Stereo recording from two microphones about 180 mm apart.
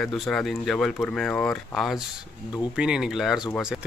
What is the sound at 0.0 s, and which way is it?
Speech, centre (ahead or behind).